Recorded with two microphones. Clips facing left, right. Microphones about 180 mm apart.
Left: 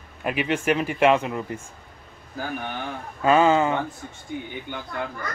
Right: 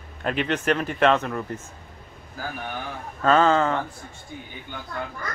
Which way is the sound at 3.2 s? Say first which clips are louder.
Left 1 dB; 10° left (ahead or behind).